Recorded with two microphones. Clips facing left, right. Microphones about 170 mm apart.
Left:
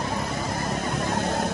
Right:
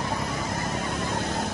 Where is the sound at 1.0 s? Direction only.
55° left (ahead or behind).